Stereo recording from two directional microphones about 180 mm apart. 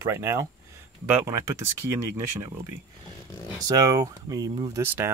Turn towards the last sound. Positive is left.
turn(degrees=-15)  # may be behind; listen again after turning